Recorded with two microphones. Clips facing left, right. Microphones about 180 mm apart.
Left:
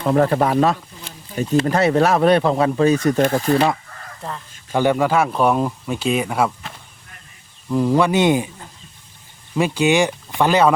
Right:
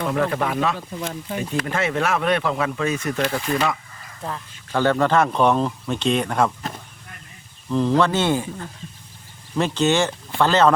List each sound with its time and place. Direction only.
0.1 s speech: 40° left (ahead or behind)
4.7 s speech: 15° left (ahead or behind)
7.7 s speech: 10° left (ahead or behind)
9.6 s speech: 10° left (ahead or behind)